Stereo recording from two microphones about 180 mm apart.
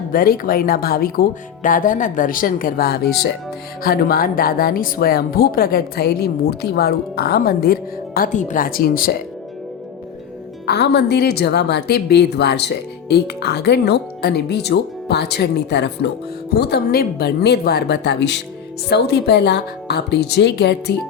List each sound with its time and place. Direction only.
0.1 s speech: 50° left (ahead or behind)
10.7 s speech: 65° left (ahead or behind)